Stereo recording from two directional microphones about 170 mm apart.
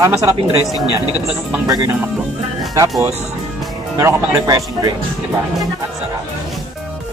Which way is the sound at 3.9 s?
15° right (ahead or behind).